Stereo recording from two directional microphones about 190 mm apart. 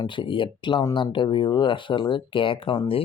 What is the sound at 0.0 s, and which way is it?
Speech, 25° left (ahead or behind).